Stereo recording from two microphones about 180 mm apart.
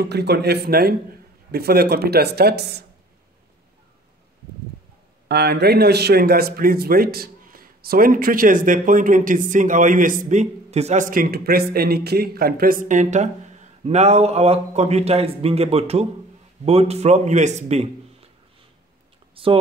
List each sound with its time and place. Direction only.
0.0 s speech: 65° right (ahead or behind)
5.3 s a man's voice: 65° right (ahead or behind); by 18.3 s 35° right (ahead or behind)
19.3 s speech: 30° right (ahead or behind)